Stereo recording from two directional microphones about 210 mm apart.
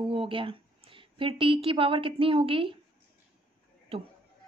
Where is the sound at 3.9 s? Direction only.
30° right (ahead or behind).